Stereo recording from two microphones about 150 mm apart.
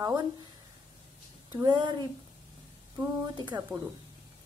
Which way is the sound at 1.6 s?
30° right (ahead or behind).